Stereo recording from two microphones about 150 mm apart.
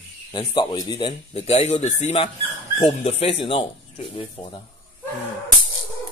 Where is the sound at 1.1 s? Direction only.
45° left (ahead or behind).